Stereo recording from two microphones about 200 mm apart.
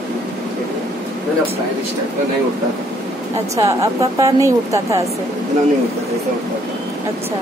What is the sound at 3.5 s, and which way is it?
A woman's voice, 15° right (ahead or behind).